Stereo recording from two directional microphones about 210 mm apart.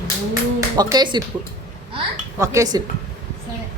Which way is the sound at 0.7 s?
20° right (ahead or behind).